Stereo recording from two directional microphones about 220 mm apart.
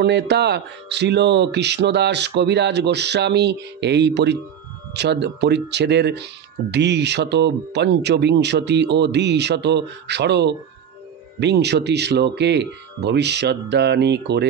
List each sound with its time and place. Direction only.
0.0 s speech: 50° right (ahead or behind)